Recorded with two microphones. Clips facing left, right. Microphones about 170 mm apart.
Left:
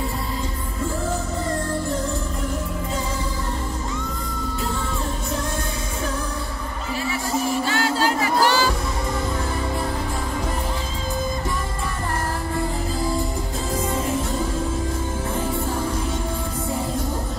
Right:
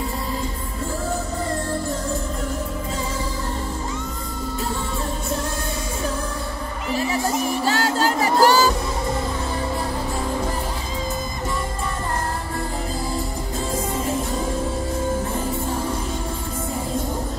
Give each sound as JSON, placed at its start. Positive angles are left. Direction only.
{"t": 7.6, "sound": "music", "side_deg": -40}